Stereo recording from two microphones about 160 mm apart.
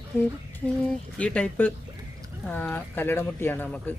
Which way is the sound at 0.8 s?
5° left (ahead or behind).